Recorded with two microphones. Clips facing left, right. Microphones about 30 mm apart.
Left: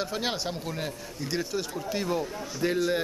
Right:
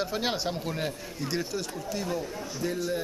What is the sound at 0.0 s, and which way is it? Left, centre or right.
Speech, centre.